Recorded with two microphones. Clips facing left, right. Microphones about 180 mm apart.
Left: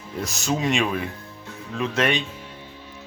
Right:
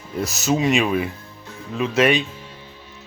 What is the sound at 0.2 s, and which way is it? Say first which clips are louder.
Speech: right 5 dB; 5° right (ahead or behind).